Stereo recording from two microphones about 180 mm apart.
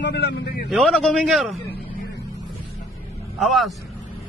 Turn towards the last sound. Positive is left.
turn(degrees=0)  # may be behind; listen again after turning